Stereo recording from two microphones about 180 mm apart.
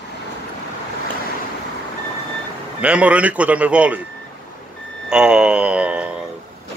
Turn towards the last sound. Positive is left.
turn(degrees=-5)  # may be behind; listen again after turning